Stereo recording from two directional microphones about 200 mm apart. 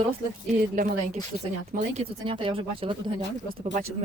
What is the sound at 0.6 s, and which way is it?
Speech, 45° right (ahead or behind).